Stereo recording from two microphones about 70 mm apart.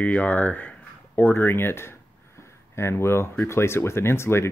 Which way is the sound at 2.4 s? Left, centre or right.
Left.